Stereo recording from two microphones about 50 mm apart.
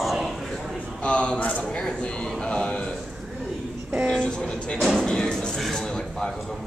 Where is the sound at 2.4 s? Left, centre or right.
Centre.